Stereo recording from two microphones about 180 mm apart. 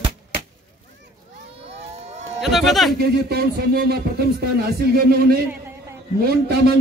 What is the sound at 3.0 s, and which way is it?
Speech, 60° right (ahead or behind).